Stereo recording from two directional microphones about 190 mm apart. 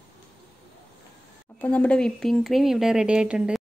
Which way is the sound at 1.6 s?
5° left (ahead or behind).